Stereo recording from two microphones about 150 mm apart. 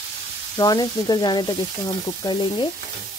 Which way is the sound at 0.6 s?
25° left (ahead or behind).